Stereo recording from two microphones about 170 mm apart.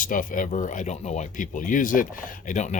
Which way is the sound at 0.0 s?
50° left (ahead or behind).